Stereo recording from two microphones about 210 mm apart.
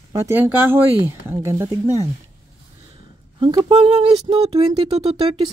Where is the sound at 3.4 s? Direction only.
25° right (ahead or behind).